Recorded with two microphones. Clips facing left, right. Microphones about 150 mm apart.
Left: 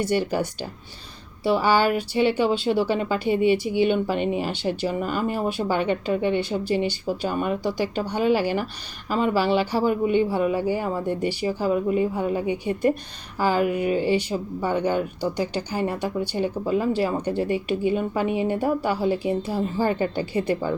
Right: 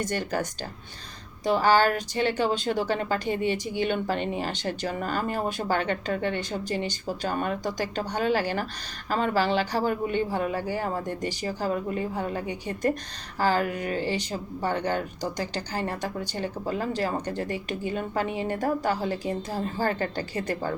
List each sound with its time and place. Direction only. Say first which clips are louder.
0.0 s speech: left 5 dB; 10° left (ahead or behind)